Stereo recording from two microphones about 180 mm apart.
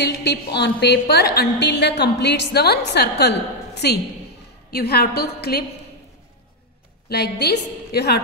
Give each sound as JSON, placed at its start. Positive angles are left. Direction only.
{"t": 0.0, "sound": "a woman's voice", "side_deg": 70}
{"t": 7.1, "sound": "a woman's voice", "side_deg": 65}